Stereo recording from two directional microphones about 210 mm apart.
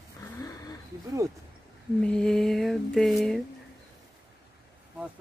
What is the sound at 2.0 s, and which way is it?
Speech, 5° left (ahead or behind).